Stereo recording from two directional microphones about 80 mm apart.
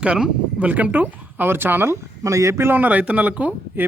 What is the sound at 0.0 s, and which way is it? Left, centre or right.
Speech, centre.